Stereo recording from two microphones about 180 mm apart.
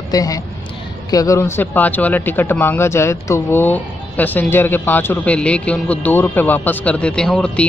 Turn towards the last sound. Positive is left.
turn(degrees=5)  # may be behind; listen again after turning